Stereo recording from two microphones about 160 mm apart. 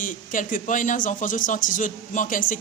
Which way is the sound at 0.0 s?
55° left (ahead or behind).